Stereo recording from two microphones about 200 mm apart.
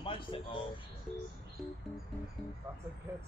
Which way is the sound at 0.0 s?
25° left (ahead or behind).